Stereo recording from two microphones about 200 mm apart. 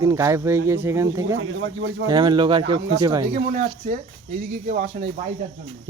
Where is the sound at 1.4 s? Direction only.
75° right (ahead or behind).